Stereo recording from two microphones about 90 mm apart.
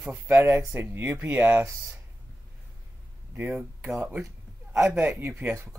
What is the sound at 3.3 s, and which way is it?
Speech, 20° right (ahead or behind).